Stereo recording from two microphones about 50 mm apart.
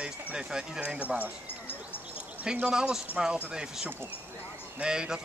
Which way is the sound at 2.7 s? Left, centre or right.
Centre.